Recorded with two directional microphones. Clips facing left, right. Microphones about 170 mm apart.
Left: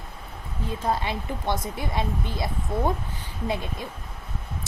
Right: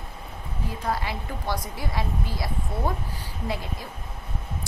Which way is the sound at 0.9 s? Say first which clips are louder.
Left 2 dB; 25° left (ahead or behind).